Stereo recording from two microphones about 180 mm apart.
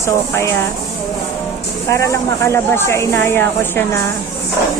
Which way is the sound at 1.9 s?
15° left (ahead or behind).